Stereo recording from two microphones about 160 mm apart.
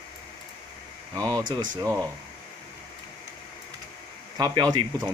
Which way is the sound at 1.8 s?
20° right (ahead or behind).